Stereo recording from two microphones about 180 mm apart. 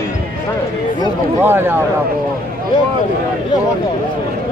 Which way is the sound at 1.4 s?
10° right (ahead or behind).